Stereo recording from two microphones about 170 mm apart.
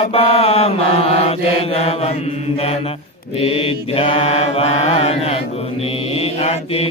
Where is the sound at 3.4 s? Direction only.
35° left (ahead or behind).